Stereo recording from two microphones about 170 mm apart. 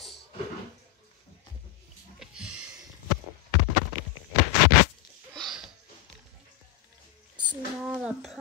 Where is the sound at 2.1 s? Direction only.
5° right (ahead or behind).